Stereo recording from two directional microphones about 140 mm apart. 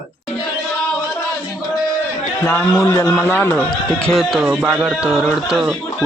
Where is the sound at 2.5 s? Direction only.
15° left (ahead or behind).